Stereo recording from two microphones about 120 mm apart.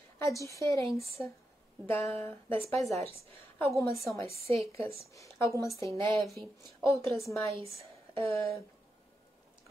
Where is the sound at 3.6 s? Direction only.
25° left (ahead or behind).